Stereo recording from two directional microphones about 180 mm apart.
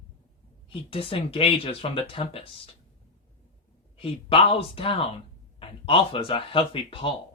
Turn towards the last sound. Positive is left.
turn(degrees=30)  # may be behind; listen again after turning